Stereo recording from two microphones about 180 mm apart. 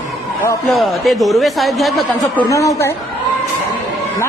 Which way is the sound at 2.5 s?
15° left (ahead or behind).